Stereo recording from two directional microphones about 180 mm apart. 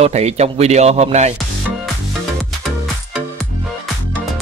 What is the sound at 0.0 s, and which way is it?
Speech, 35° right (ahead or behind).